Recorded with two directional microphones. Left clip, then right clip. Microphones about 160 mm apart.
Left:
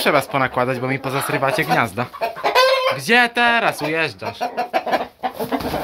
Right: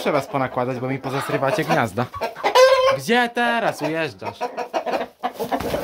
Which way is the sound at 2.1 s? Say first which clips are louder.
Even; 60° right (ahead or behind).